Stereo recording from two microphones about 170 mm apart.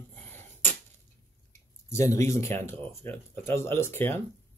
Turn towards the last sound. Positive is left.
turn(degrees=15)  # may be behind; listen again after turning